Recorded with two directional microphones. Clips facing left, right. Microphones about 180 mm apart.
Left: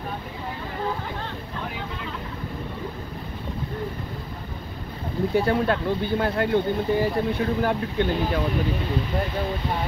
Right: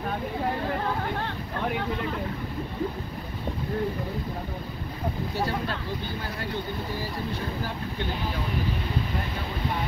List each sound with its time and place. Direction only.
5.3 s speech: 60° left (ahead or behind)